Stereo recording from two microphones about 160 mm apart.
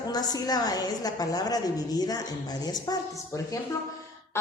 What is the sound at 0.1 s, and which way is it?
A woman's voice, 25° left (ahead or behind).